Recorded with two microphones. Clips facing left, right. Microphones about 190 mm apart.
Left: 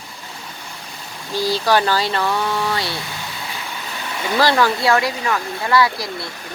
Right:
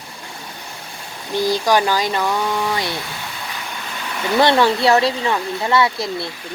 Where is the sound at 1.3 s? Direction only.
20° right (ahead or behind).